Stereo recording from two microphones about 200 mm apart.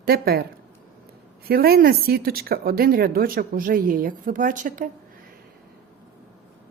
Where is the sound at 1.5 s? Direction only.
50° right (ahead or behind).